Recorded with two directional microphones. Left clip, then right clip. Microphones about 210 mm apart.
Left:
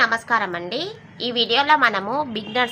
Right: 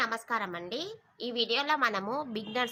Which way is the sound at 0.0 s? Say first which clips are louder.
Left 12 dB; 50° right (ahead or behind).